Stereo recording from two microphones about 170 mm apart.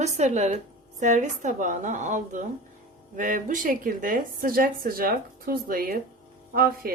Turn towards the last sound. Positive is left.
turn(degrees=-60)  # may be behind; listen again after turning